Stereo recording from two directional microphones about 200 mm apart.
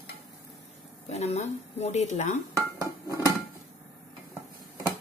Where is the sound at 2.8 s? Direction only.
15° right (ahead or behind).